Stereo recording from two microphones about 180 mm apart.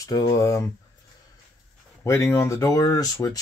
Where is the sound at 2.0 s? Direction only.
15° left (ahead or behind).